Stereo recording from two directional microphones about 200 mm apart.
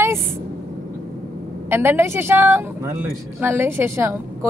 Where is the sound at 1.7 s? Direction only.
10° right (ahead or behind).